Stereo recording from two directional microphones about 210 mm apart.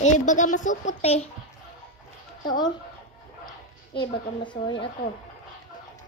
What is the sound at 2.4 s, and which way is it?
Speech, 20° left (ahead or behind).